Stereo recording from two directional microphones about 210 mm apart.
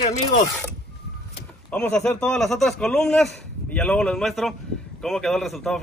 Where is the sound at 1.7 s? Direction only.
5° left (ahead or behind).